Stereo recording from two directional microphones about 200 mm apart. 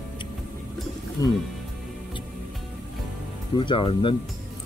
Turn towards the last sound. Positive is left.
turn(degrees=25)  # may be behind; listen again after turning